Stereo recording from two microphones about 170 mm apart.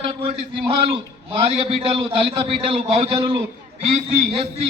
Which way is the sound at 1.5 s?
35° right (ahead or behind).